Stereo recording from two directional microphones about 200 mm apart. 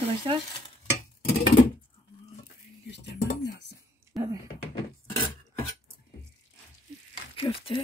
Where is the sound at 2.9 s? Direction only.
55° left (ahead or behind).